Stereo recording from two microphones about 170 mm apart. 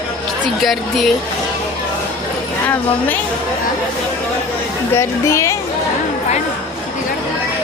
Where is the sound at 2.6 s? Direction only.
10° left (ahead or behind).